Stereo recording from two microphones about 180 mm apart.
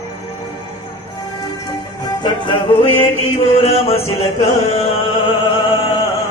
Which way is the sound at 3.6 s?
35° left (ahead or behind).